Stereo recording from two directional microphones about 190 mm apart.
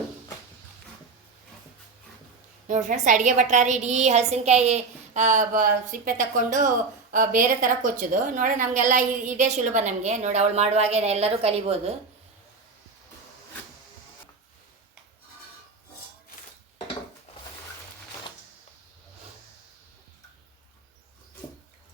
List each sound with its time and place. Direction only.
2.6 s a woman's voice: 40° right (ahead or behind)